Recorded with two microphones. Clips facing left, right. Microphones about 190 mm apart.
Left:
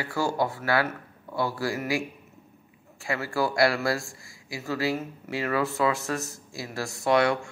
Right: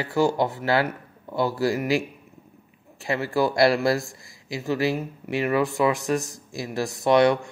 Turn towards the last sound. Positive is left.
turn(degrees=-20)  # may be behind; listen again after turning